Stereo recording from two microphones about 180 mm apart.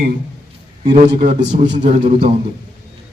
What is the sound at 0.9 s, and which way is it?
A man's voice, 30° right (ahead or behind).